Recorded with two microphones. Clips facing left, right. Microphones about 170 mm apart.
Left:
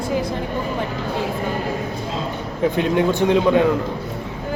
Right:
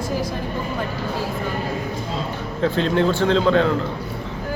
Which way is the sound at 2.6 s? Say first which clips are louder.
Left 1 dB; 15° left (ahead or behind).